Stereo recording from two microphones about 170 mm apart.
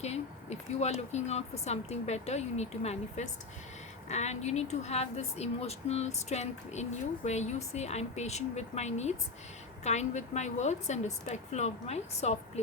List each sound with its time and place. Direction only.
0.0 s speech: 40° left (ahead or behind)